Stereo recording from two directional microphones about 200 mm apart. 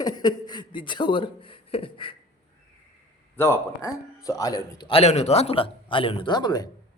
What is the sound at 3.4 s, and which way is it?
A man's voice, 15° left (ahead or behind).